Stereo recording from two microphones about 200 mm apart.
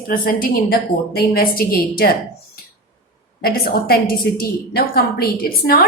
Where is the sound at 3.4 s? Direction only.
50° left (ahead or behind).